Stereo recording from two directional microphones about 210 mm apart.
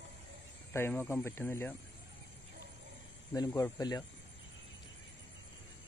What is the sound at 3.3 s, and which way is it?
Speech, 15° left (ahead or behind).